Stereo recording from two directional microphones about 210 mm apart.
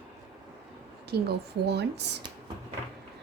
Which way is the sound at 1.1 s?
50° right (ahead or behind).